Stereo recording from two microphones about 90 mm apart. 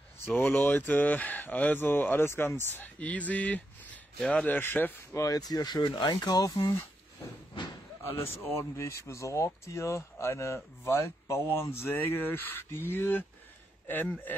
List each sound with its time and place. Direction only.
0.4 s speech: 20° left (ahead or behind)
5.1 s speech: 40° left (ahead or behind)
8.0 s speech: 30° left (ahead or behind)